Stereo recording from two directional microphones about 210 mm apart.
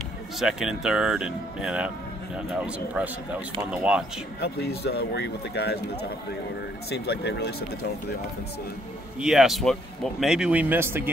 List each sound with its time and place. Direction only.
0.4 s speech: centre (ahead or behind)
4.4 s speech: 50° left (ahead or behind)
6.9 s speech: 50° left (ahead or behind)
9.2 s speech: centre (ahead or behind)